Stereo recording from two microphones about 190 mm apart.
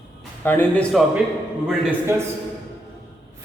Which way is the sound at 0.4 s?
10° left (ahead or behind).